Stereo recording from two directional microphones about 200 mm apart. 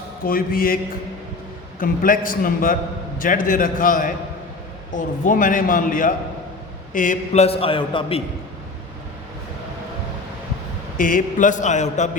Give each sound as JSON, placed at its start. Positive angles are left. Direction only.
{"t": 0.3, "sound": "a man's voice", "side_deg": 45}
{"t": 1.8, "sound": "a man's voice", "side_deg": 40}
{"t": 10.9, "sound": "a man's voice", "side_deg": 45}